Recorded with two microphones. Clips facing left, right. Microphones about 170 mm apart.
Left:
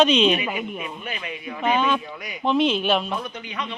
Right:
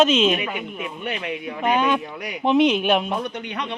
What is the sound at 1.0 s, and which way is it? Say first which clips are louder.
Speech: right 5 dB; 70° right (ahead or behind).